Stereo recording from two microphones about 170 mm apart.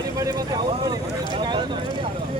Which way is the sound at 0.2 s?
20° right (ahead or behind).